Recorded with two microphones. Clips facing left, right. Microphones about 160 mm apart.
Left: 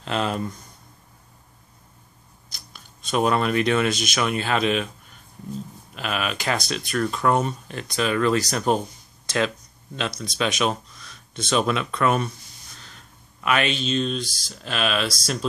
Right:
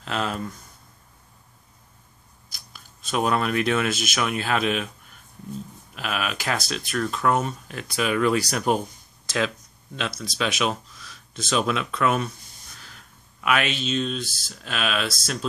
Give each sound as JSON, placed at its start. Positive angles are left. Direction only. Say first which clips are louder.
{"t": 0.0, "sound": "speech", "louder": "left 3 dB", "side_deg": 0}
{"t": 2.5, "sound": "speech", "louder": "left 1 dB", "side_deg": -5}
{"t": 5.9, "sound": "speech", "louder": "left 1 dB", "side_deg": 0}